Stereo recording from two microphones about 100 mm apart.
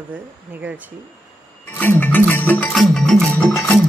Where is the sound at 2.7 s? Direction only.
5° left (ahead or behind).